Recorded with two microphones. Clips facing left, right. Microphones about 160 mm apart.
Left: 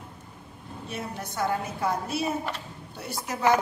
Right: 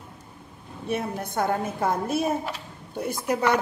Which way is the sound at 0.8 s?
55° right (ahead or behind).